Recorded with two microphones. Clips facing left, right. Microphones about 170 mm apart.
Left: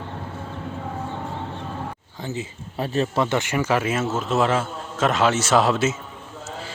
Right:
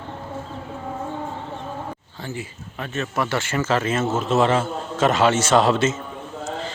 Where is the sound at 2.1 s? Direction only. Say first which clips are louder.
Left 3 dB; 20° left (ahead or behind).